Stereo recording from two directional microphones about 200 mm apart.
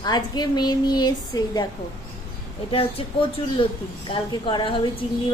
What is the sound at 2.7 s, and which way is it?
A woman's voice, 25° left (ahead or behind).